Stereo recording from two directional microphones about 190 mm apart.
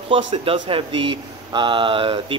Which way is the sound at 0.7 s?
25° right (ahead or behind).